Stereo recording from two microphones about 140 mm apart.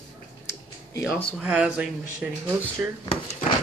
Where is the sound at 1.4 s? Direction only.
10° right (ahead or behind).